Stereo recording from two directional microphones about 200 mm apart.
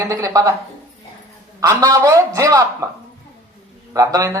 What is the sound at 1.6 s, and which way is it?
Speech, 15° right (ahead or behind).